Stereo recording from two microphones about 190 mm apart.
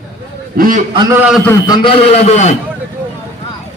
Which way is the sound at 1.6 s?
30° left (ahead or behind).